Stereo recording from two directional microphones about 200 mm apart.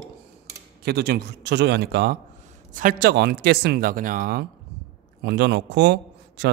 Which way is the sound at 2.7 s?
45° right (ahead or behind).